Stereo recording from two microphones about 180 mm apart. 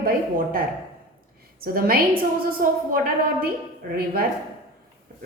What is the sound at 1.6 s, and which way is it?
Speech, 55° right (ahead or behind).